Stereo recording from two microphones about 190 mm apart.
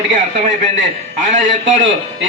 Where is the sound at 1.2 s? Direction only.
40° right (ahead or behind).